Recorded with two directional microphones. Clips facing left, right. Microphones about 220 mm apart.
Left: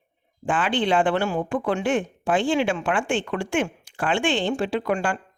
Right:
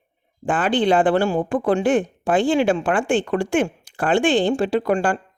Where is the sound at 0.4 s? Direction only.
40° right (ahead or behind).